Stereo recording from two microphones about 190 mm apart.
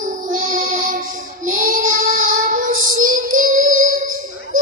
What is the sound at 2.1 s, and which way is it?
Child singing, 45° right (ahead or behind).